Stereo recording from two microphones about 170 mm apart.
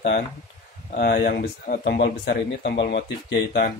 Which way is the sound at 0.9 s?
65° left (ahead or behind).